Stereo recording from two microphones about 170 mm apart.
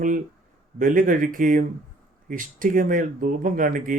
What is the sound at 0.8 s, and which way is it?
Speech, 55° right (ahead or behind).